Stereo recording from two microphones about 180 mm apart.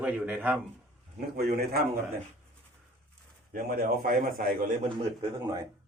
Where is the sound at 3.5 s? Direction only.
60° right (ahead or behind).